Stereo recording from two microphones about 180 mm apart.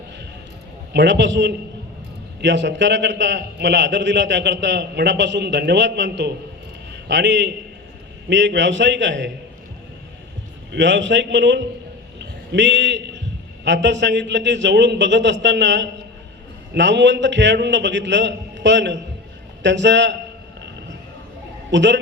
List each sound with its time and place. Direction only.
0.9 s a man's voice: 80° right
10.7 s a man's voice: 85° right
21.7 s a man's voice: 85° right